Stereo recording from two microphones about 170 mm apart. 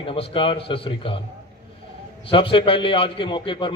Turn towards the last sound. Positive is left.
turn(degrees=30)  # may be behind; listen again after turning